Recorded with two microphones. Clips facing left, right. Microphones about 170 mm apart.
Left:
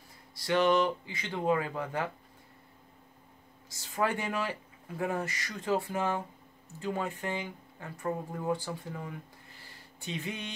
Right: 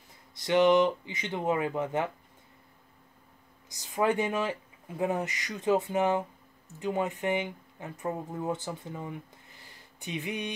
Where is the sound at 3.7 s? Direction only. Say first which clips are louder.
Right 4 dB; 20° right (ahead or behind).